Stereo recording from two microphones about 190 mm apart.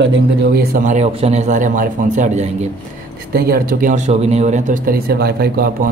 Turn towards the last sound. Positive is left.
turn(degrees=-55)  # may be behind; listen again after turning